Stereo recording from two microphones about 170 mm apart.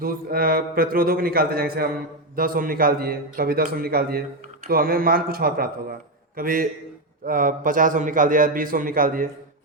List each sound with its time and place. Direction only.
0.0 s a man's voice: 60° right (ahead or behind)